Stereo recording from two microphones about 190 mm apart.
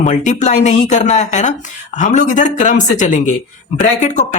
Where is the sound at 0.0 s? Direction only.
40° left (ahead or behind).